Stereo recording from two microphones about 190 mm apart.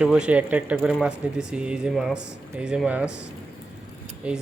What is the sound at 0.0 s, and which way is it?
Speech, 5° right (ahead or behind).